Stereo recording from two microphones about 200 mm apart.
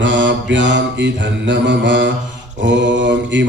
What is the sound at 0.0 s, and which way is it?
Mantra, 65° right (ahead or behind).